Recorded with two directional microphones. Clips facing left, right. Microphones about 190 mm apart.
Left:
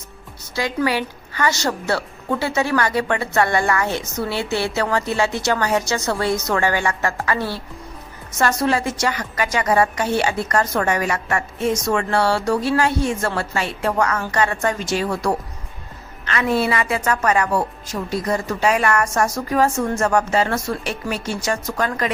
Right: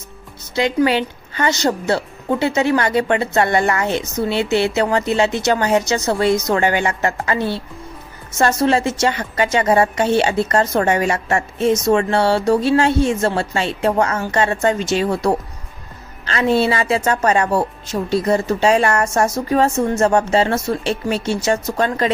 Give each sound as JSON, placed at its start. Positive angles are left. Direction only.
{"t": 0.5, "sound": "a woman's voice", "side_deg": -20}